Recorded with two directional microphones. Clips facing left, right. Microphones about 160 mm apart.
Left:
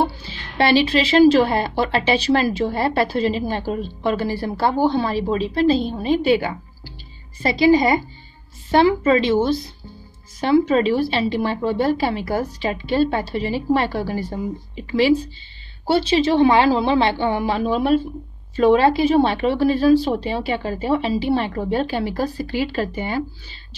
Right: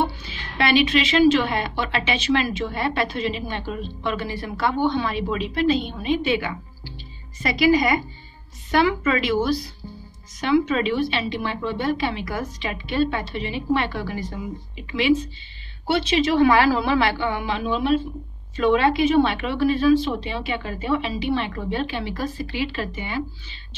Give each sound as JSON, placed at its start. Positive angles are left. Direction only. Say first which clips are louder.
{"t": 0.0, "sound": "a woman's voice", "louder": "left 3 dB", "side_deg": 30}
{"t": 10.4, "sound": "a woman's voice", "louder": "left 4 dB", "side_deg": 35}